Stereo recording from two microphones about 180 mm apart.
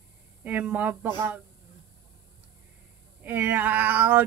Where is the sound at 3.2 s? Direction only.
10° right (ahead or behind).